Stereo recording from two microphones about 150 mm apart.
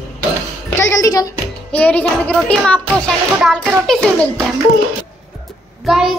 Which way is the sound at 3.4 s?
5° left (ahead or behind).